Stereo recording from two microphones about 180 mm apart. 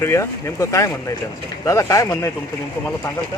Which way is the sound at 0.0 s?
15° left (ahead or behind).